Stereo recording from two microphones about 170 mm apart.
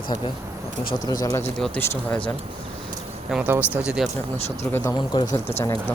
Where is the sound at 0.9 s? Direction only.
25° left (ahead or behind).